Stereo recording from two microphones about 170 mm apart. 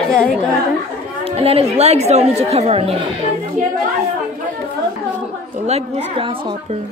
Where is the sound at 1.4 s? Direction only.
35° right (ahead or behind).